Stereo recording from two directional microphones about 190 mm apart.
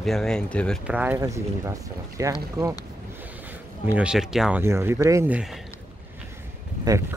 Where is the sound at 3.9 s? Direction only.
5° right (ahead or behind).